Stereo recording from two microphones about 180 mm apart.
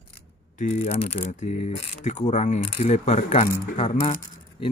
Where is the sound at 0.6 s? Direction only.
40° left (ahead or behind).